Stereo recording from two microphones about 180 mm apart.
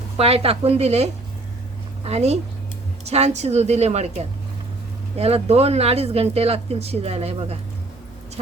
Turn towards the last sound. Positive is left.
turn(degrees=-35)  # may be behind; listen again after turning